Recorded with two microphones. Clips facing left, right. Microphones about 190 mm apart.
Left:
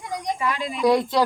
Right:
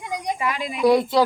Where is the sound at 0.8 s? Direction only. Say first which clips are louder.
Right 2 dB; 5° right (ahead or behind).